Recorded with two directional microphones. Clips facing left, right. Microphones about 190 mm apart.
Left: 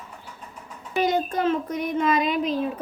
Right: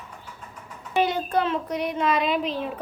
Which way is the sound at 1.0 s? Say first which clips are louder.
Left 6 dB; 45° left (ahead or behind).